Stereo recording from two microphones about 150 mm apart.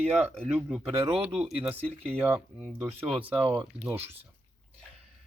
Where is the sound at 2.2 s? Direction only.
10° right (ahead or behind).